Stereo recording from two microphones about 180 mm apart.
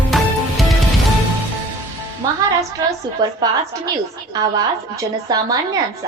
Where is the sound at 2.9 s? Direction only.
20° right (ahead or behind).